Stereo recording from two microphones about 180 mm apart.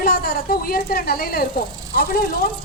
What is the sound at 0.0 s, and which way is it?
A woman's voice, 60° left (ahead or behind).